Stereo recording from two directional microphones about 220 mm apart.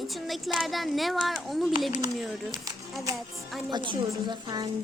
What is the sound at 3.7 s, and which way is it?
A woman's voice, 20° right (ahead or behind).